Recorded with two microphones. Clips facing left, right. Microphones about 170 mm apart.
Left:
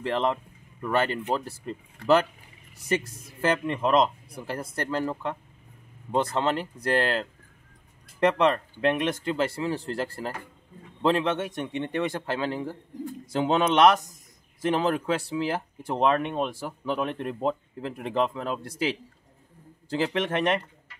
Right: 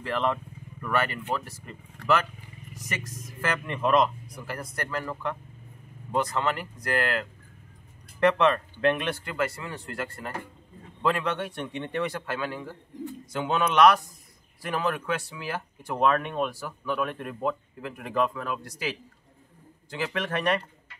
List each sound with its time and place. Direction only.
0.0 s speech: 20° left (ahead or behind)